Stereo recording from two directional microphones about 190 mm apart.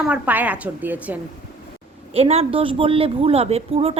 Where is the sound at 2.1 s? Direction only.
30° right (ahead or behind).